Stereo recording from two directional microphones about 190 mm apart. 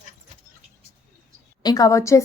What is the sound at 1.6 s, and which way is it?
Speech, 20° left (ahead or behind).